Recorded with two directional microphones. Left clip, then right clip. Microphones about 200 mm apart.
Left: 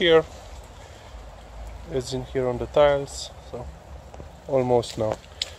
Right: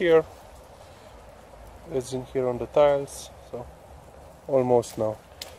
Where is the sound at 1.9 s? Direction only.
5° right (ahead or behind).